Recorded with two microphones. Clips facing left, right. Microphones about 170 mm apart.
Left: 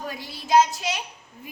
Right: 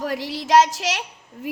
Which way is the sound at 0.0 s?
90° right.